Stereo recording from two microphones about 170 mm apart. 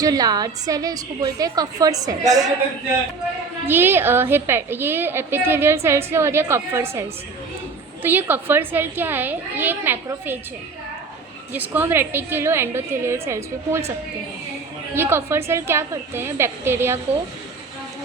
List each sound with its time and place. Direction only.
0.0 s a woman's voice: 20° right (ahead or behind)
3.7 s a woman's voice: 15° right (ahead or behind)
8.0 s a woman's voice: 10° right (ahead or behind)
11.5 s a woman's voice: 10° right (ahead or behind)
14.9 s a woman's voice: 15° right (ahead or behind)